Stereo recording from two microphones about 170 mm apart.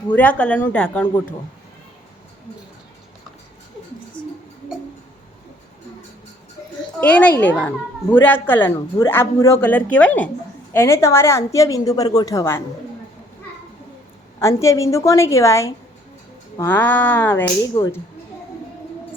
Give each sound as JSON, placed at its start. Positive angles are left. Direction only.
{"t": 0.1, "sound": "a man's voice", "side_deg": 10}
{"t": 7.0, "sound": "a man's voice", "side_deg": 10}
{"t": 14.3, "sound": "a man's voice", "side_deg": 15}